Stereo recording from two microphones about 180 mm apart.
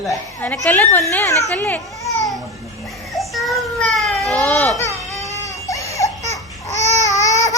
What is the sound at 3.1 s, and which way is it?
Baby cry, centre (ahead or behind).